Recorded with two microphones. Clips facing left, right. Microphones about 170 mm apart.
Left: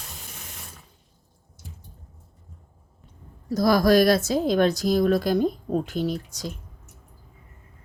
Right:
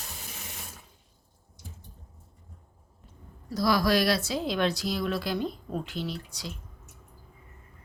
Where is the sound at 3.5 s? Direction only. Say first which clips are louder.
Left 6 dB; 45° left (ahead or behind).